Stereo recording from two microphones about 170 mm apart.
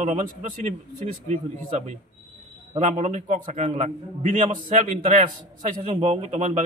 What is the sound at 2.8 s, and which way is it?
A man's voice, 45° right (ahead or behind).